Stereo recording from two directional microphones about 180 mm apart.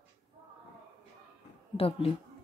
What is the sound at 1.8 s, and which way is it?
Speech, 30° left (ahead or behind).